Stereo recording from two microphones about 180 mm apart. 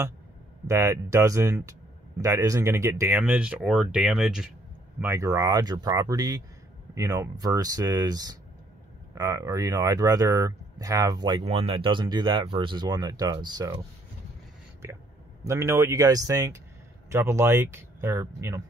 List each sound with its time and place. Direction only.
0.7 s speech: 15° right (ahead or behind)
5.0 s speech: 15° right (ahead or behind)
14.8 s speech: 15° right (ahead or behind)